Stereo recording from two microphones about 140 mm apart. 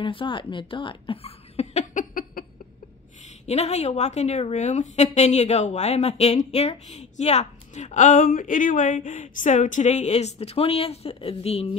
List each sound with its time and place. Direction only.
0.0 s speech: 35° left (ahead or behind); by 2.0 s 55° left (ahead or behind)
2.4 s a sound: 90° left
3.4 s a woman's voice: 50° left (ahead or behind)